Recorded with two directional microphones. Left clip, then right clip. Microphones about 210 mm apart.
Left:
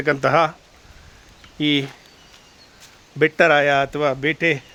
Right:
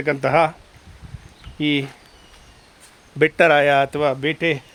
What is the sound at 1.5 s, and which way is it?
Speech, centre (ahead or behind).